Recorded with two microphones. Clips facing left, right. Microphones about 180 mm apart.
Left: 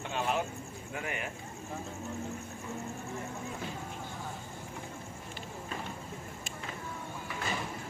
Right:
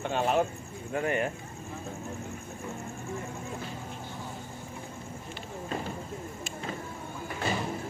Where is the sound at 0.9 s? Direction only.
40° right (ahead or behind).